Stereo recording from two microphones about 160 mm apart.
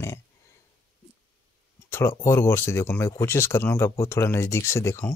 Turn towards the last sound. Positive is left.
turn(degrees=15)  # may be behind; listen again after turning